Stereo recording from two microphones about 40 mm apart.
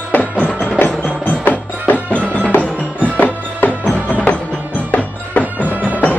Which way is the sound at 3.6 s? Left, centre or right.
Left.